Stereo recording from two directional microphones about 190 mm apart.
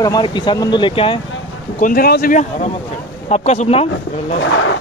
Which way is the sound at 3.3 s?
35° left (ahead or behind).